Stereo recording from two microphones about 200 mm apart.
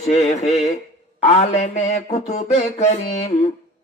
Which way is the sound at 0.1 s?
35° left (ahead or behind).